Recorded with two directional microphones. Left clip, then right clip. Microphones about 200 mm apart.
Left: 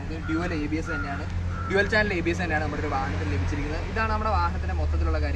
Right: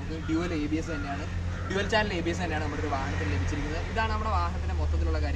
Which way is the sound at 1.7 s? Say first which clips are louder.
Left 4 dB; 35° left (ahead or behind).